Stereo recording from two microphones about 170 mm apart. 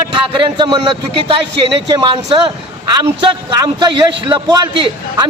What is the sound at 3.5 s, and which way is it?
A man's voice, 25° right (ahead or behind).